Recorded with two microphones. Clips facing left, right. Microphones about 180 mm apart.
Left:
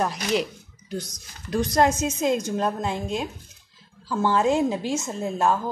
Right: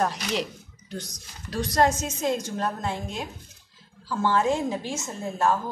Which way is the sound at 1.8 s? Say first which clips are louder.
Left 1 dB; 15° left (ahead or behind).